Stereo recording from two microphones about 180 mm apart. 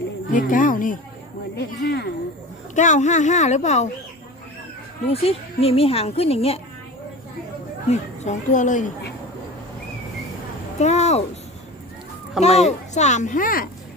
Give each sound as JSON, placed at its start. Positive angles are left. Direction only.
{"t": 0.3, "sound": "speech", "side_deg": 50}
{"t": 1.5, "sound": "speech", "side_deg": 65}
{"t": 2.7, "sound": "a woman's voice", "side_deg": 40}
{"t": 5.1, "sound": "a woman's voice", "side_deg": 35}
{"t": 7.9, "sound": "speech", "side_deg": 40}
{"t": 10.8, "sound": "a woman's voice", "side_deg": 40}
{"t": 12.4, "sound": "a woman's voice", "side_deg": 35}